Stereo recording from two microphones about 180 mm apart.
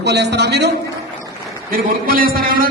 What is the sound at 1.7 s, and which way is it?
A man's voice, 55° right (ahead or behind).